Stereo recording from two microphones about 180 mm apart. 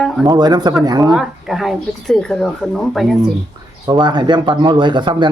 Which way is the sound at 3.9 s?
25° right (ahead or behind).